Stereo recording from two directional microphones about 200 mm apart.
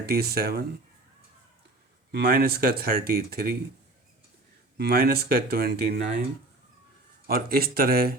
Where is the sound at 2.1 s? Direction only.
50° right (ahead or behind).